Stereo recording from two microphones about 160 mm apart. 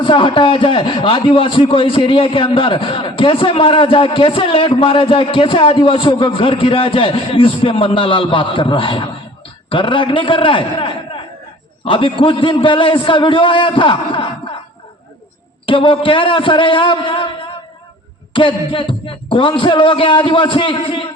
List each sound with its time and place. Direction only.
0.0 s a man's voice: 30° left (ahead or behind)
15.6 s a man's voice: 30° left (ahead or behind)
18.3 s a man's voice: 35° left (ahead or behind)